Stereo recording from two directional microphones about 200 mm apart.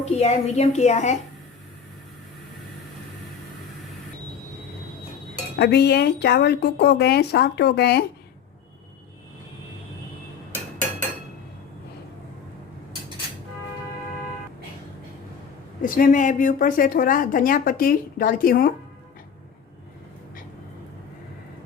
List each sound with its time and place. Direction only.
0.0 s a woman's voice: 35° left (ahead or behind)
5.5 s speech: 55° left (ahead or behind)
15.8 s a woman's voice: 40° left (ahead or behind)